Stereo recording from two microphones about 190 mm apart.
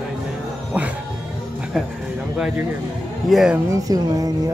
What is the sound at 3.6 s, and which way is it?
Speech, 20° right (ahead or behind).